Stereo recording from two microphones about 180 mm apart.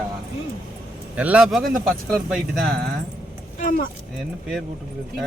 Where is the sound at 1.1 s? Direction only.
5° right (ahead or behind).